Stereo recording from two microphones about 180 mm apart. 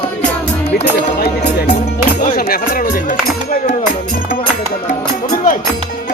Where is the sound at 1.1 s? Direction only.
60° left (ahead or behind).